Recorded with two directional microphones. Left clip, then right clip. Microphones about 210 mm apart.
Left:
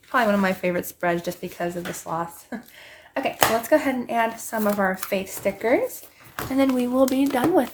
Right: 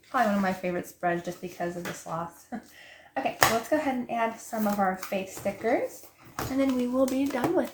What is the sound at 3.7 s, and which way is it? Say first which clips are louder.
Speech: left 7 dB; 50° left (ahead or behind).